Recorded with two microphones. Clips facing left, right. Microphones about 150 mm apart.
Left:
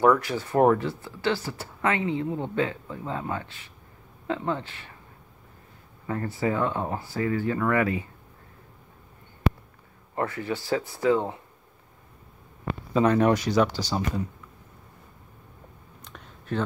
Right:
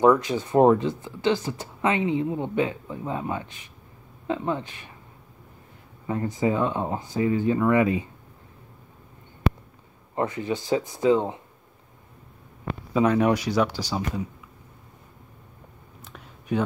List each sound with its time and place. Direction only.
0.0 s speech: 20° right (ahead or behind)
6.0 s speech: 15° right (ahead or behind)
10.1 s speech: 20° right (ahead or behind)
12.9 s speech: 5° right (ahead or behind)
16.0 s a sound: 5° right (ahead or behind)